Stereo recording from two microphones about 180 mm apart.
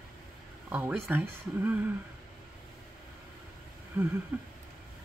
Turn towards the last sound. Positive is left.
turn(degrees=-10)  # may be behind; listen again after turning